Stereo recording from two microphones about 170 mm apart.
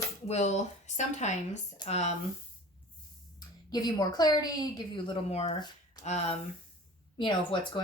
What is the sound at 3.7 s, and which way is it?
A woman's voice, 25° left (ahead or behind).